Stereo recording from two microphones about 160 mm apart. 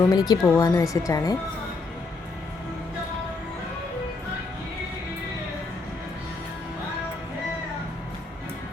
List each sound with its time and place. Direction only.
0.0 s speech: 25° left (ahead or behind)